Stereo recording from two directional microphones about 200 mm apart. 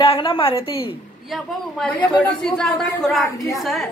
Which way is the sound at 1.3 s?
5° left (ahead or behind).